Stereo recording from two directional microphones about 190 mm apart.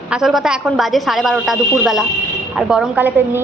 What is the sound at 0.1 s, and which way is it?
A woman's voice, centre (ahead or behind).